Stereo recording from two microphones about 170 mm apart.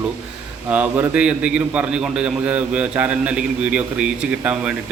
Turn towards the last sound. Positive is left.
turn(degrees=-5)  # may be behind; listen again after turning